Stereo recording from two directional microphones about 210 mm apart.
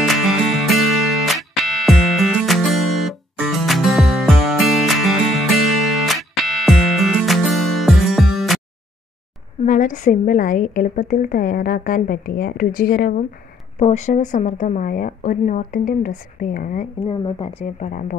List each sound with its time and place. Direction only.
0.0 s music: centre (ahead or behind)
9.7 s a woman's voice: 40° left (ahead or behind)
13.7 s a woman's voice: 35° left (ahead or behind)
17.0 s speech: 25° left (ahead or behind)